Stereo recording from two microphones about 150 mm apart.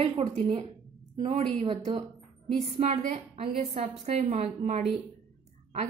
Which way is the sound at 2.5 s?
45° right (ahead or behind).